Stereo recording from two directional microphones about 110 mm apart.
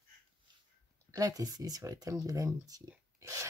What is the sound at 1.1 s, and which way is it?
Speech, 30° right (ahead or behind).